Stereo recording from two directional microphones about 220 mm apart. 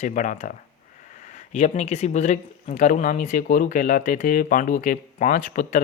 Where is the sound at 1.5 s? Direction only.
30° left (ahead or behind).